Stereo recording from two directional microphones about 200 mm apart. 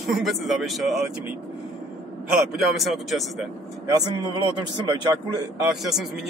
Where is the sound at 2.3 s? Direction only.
Centre (ahead or behind).